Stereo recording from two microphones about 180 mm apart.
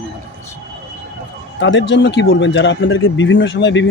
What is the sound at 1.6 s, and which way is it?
Speech, 90° left.